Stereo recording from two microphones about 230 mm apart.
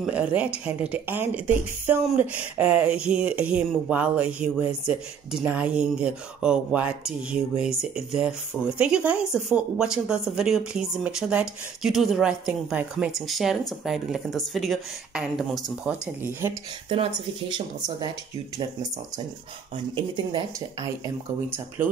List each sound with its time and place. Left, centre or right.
0.0 s speech: centre
16.9 s speech: right
20.0 s speech: centre